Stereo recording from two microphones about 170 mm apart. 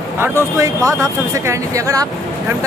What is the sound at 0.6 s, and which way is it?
Speech, 20° right (ahead or behind).